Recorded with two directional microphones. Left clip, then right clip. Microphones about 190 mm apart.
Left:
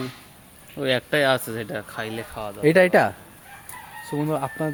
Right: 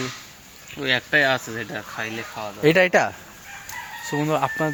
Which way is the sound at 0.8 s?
65° left (ahead or behind).